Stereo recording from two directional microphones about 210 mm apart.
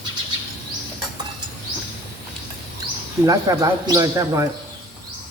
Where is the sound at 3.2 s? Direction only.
15° right (ahead or behind).